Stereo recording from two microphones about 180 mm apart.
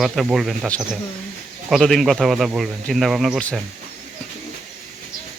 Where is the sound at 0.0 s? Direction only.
Centre (ahead or behind).